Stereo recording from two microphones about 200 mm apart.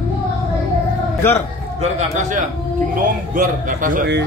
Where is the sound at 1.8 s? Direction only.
35° right (ahead or behind).